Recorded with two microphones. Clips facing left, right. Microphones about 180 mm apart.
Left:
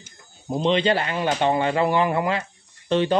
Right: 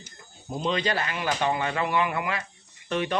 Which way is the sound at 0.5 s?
25° left (ahead or behind).